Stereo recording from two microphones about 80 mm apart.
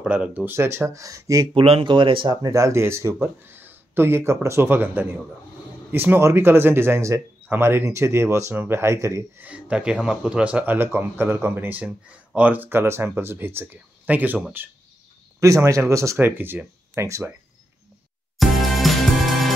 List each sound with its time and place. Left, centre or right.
0.0 s speech: centre
0.5 s speech: right
1.5 s speech: right
2.4 s speech: right
9.4 s speech: centre
15.4 s speech: right
16.9 s speech: right
18.4 s music: centre